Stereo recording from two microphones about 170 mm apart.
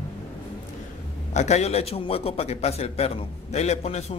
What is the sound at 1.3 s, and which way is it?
A man's voice, 40° left (ahead or behind).